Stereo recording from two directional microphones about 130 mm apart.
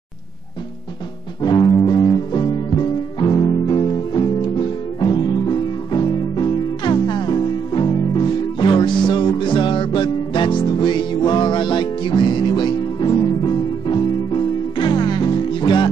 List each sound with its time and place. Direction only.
1.4 s music: 30° left (ahead or behind)